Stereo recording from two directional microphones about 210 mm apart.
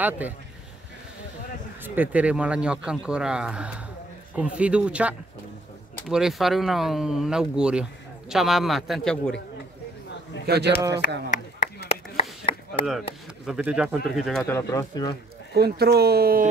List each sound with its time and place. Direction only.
0.2 s a man's voice: 5° right (ahead or behind)
2.0 s a man's voice: 5° right (ahead or behind)
10.4 s speech: 50° right (ahead or behind)
11.2 s chop: 30° left (ahead or behind)
13.5 s a man's voice: 5° right (ahead or behind)
14.4 s speech: 10° left (ahead or behind)
15.5 s speech: 50° right (ahead or behind)